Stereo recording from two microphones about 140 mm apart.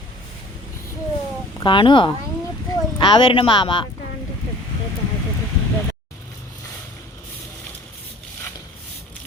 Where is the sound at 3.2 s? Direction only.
40° left (ahead or behind).